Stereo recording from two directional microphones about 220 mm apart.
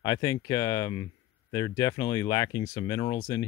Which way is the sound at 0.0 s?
15° left (ahead or behind).